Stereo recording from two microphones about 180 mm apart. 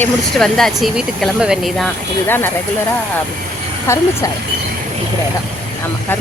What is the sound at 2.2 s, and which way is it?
Speech, 10° left (ahead or behind).